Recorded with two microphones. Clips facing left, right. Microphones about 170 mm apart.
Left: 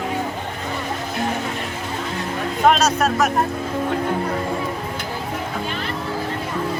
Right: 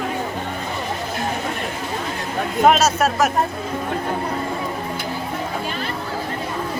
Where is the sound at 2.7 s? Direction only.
5° right (ahead or behind).